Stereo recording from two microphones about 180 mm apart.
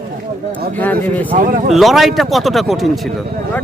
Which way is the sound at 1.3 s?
45° right (ahead or behind).